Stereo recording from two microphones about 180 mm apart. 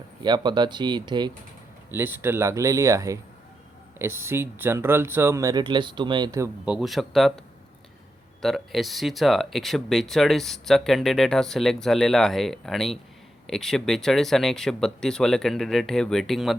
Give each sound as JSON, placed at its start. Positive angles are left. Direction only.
{"t": 0.2, "sound": "speech", "side_deg": -25}
{"t": 1.9, "sound": "speech", "side_deg": -15}
{"t": 6.7, "sound": "speech", "side_deg": 0}